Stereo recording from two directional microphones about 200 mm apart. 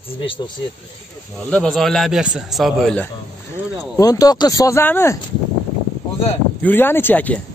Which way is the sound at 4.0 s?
20° left (ahead or behind).